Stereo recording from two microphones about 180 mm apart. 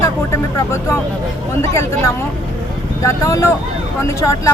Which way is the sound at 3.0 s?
15° left (ahead or behind).